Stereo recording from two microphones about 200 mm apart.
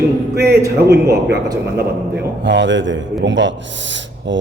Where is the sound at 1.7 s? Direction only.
60° right (ahead or behind).